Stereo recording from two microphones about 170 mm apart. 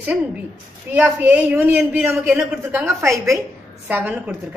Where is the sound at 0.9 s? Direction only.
10° right (ahead or behind).